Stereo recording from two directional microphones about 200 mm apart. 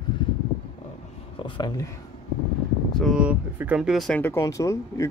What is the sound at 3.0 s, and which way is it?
Speech, 5° right (ahead or behind).